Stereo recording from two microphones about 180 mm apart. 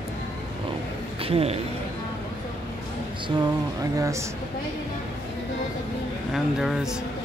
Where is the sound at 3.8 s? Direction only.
20° right (ahead or behind).